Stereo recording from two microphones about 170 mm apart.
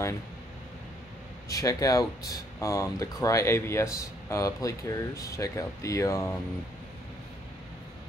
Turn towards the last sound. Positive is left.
turn(degrees=15)  # may be behind; listen again after turning